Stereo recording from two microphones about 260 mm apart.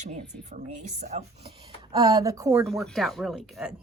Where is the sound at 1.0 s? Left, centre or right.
Right.